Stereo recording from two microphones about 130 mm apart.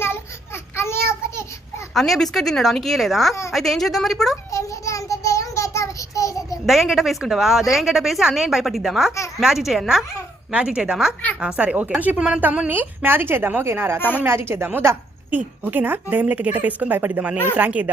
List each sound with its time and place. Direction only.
0.0 s a sound: 20° left (ahead or behind)
1.9 s a woman's voice: centre (ahead or behind)
4.5 s child singing: 25° left (ahead or behind)
6.7 s a woman's voice: centre (ahead or behind)